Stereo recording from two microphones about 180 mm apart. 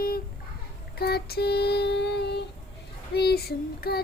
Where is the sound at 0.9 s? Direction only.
60° left (ahead or behind).